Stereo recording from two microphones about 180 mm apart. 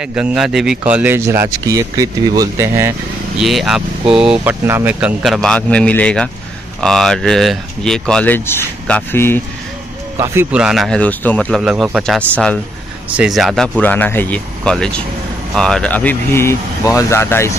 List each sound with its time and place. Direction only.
0.0 s speech: 5° right (ahead or behind)
3.3 s speech: centre (ahead or behind)
10.1 s speech: 15° right (ahead or behind)
10.5 s speech: 5° right (ahead or behind); by 17.5 s 15° left (ahead or behind)